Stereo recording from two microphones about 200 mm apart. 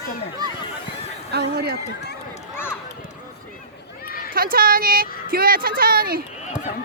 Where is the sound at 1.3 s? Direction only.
55° right (ahead or behind).